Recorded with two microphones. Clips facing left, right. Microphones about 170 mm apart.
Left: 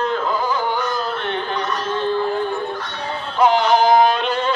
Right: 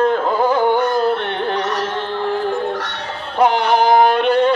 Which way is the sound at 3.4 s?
60° right (ahead or behind).